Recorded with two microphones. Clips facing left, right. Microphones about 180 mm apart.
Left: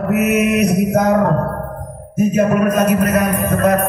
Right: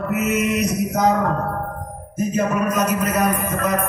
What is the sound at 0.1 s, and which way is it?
Speech, 55° left (ahead or behind).